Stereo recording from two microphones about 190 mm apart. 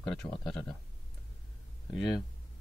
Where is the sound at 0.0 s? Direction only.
Centre (ahead or behind).